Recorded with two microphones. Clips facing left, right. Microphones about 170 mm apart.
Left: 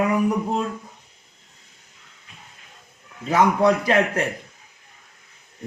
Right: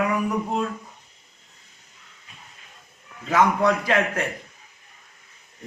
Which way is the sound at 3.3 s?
35° left (ahead or behind).